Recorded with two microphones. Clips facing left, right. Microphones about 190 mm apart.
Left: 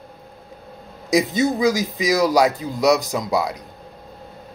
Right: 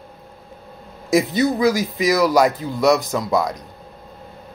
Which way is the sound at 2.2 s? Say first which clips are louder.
Right 1 dB; 45° left (ahead or behind).